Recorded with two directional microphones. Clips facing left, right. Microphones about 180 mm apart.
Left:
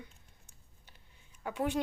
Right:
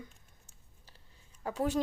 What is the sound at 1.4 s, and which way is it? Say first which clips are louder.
Speech: right 2 dB; 35° right (ahead or behind).